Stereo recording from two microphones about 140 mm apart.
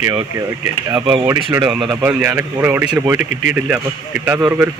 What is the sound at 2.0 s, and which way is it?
Speech, 15° right (ahead or behind).